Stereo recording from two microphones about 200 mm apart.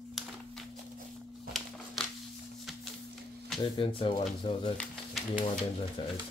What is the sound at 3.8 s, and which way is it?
Speech, 25° left (ahead or behind).